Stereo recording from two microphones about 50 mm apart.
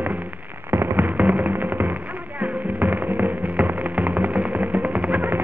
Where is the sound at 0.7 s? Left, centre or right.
Right.